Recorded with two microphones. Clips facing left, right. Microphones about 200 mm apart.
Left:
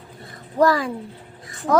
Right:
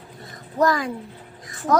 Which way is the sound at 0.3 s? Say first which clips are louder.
Left 3 dB; 30° left (ahead or behind).